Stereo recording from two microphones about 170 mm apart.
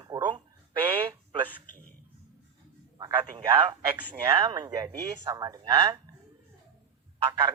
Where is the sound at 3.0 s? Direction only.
25° right (ahead or behind).